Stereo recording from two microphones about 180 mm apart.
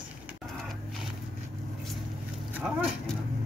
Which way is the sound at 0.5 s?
Centre (ahead or behind).